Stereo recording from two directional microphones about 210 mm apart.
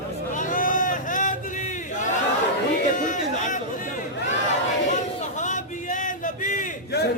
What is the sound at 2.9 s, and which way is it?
Chatter, 35° left (ahead or behind).